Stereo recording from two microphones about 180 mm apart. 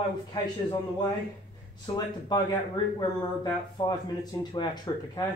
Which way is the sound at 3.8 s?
30° left (ahead or behind).